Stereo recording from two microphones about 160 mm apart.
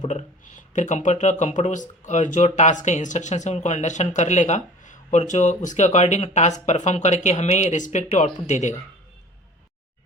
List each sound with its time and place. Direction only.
0.0 s speech: 50° left (ahead or behind)